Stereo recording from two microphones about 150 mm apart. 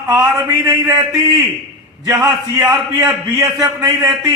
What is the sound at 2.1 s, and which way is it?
A man's voice, 25° right (ahead or behind).